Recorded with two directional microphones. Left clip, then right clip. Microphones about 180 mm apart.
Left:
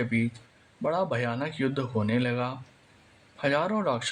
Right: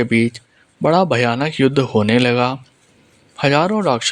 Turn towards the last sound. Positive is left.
turn(degrees=-45)  # may be behind; listen again after turning